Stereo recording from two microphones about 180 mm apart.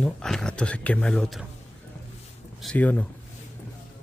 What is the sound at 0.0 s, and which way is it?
Speech, 5° left (ahead or behind).